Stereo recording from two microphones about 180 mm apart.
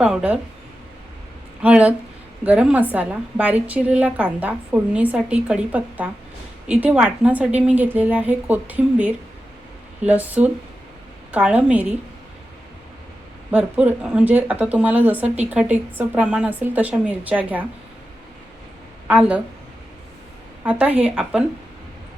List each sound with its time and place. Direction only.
0.0 s speech: 5° right (ahead or behind)
1.6 s a woman's voice: 5° right (ahead or behind)
13.5 s a woman's voice: 10° right (ahead or behind)
19.0 s a woman's voice: 5° right (ahead or behind)
20.7 s a woman's voice: 10° right (ahead or behind)